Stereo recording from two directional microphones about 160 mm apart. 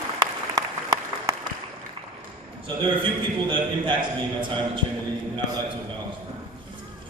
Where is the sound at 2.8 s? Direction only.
30° right (ahead or behind).